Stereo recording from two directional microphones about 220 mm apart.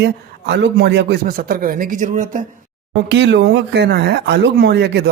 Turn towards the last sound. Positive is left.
turn(degrees=-50)  # may be behind; listen again after turning